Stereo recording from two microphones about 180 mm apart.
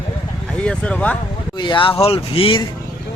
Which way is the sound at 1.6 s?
25° left (ahead or behind).